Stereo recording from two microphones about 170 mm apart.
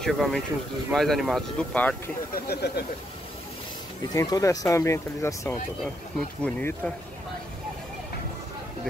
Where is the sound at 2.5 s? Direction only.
70° left (ahead or behind).